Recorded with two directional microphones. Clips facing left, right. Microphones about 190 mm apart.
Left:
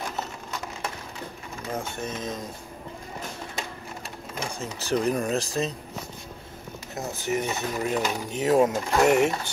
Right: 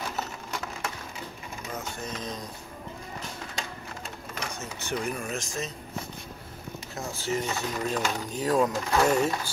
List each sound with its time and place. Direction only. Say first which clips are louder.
1.8 s speech: left 3 dB; 25° left (ahead or behind)
4.4 s speech: left 4 dB; 30° left (ahead or behind)
7.0 s speech: left 3 dB; 20° left (ahead or behind)